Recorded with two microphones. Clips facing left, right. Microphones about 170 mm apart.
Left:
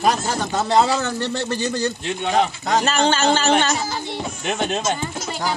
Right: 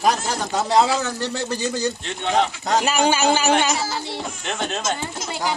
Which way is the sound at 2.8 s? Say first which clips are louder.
Even; 10° right (ahead or behind).